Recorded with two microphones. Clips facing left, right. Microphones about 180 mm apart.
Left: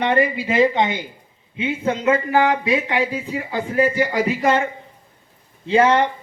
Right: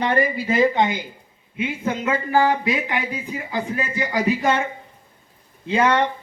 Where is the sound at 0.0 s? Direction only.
25° left (ahead or behind).